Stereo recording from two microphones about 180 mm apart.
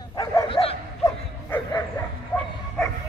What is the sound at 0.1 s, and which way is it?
Bow-wow, 25° left (ahead or behind).